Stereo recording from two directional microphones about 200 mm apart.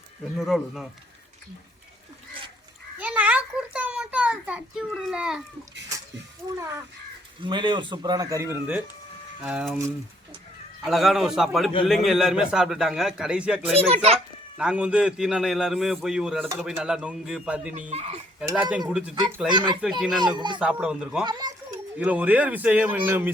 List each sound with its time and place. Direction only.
0.3 s a man's voice: centre (ahead or behind)
3.0 s a sound: 5° right (ahead or behind)
7.4 s a man's voice: 25° right (ahead or behind); by 9.7 s 5° right (ahead or behind)
10.8 s a man's voice: centre (ahead or behind)
13.7 s a child's voice: 30° right (ahead or behind)
14.6 s a man's voice: 5° right (ahead or behind)
17.9 s a child's voice: 30° right (ahead or behind)
18.4 s a man's voice: 5° right (ahead or behind)
19.5 s speech: 20° right (ahead or behind)
19.8 s a man's voice: 5° right (ahead or behind)
20.1 s speech: 20° right (ahead or behind)
20.6 s a man's voice: 5° right (ahead or behind)
21.2 s speech: 20° right (ahead or behind)
21.9 s speech: 5° right (ahead or behind)